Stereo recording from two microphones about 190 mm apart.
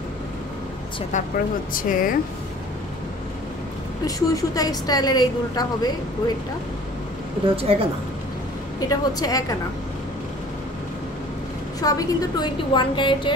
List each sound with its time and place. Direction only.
1.1 s speech: 40° left (ahead or behind)
4.0 s a woman's voice: 20° left (ahead or behind)
7.5 s a woman's voice: 30° right (ahead or behind)
8.8 s a woman's voice: 20° left (ahead or behind)
11.8 s a woman's voice: 20° left (ahead or behind)